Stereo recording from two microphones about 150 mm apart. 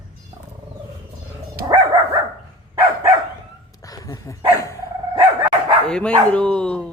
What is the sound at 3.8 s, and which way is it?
Dog, 25° left (ahead or behind).